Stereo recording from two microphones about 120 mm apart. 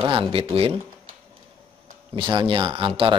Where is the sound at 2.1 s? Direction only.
40° right (ahead or behind).